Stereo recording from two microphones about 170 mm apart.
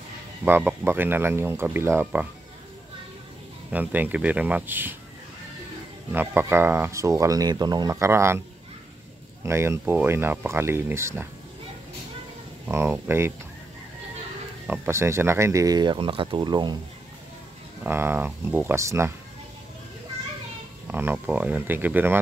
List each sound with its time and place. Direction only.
0.5 s speech: 10° right (ahead or behind)
3.7 s speech: 10° right (ahead or behind)
6.1 s speech: 15° right (ahead or behind)
9.4 s speech: 15° right (ahead or behind)
12.6 s speech: 15° right (ahead or behind)
14.7 s speech: 15° right (ahead or behind)
17.8 s speech: 15° right (ahead or behind)
20.8 s speech: 10° right (ahead or behind)